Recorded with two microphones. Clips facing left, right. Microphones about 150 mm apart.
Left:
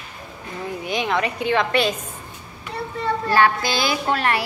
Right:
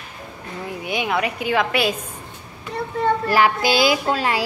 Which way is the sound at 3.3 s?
10° right (ahead or behind).